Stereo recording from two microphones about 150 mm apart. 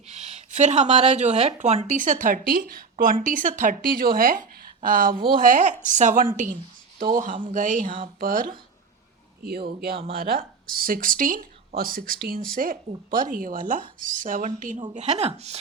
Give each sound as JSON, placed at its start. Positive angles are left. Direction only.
{"t": 0.1, "sound": "speech", "side_deg": -50}
{"t": 9.4, "sound": "speech", "side_deg": -90}
{"t": 10.2, "sound": "speech", "side_deg": -75}
{"t": 14.9, "sound": "speech", "side_deg": -50}